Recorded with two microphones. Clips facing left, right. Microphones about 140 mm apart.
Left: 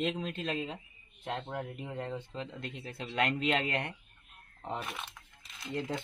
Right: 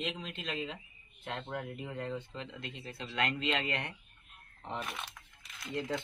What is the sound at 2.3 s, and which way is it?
A man's voice, 40° left (ahead or behind).